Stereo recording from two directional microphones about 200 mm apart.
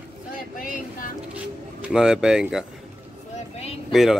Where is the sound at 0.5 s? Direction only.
45° left (ahead or behind).